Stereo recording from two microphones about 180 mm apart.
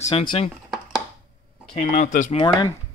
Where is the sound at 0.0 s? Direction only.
30° left (ahead or behind).